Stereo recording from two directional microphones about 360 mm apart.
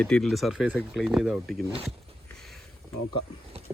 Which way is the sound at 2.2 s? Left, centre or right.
Centre.